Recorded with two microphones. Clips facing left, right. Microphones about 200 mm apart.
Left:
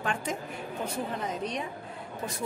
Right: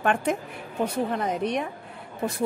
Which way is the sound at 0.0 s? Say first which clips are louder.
Right 8 dB; 60° right (ahead or behind).